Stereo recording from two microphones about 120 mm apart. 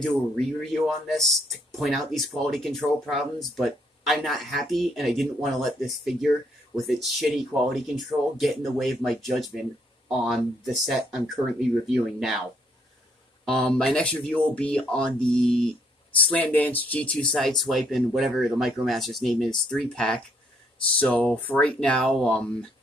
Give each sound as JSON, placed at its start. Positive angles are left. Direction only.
{"t": 0.0, "sound": "speech", "side_deg": 0}
{"t": 12.2, "sound": "speech", "side_deg": 0}
{"t": 13.5, "sound": "speech", "side_deg": 5}